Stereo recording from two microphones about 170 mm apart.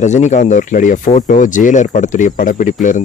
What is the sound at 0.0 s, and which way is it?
Speech, 45° left (ahead or behind).